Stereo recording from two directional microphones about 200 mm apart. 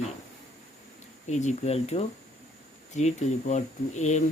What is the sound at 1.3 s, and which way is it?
Speech, 35° left (ahead or behind).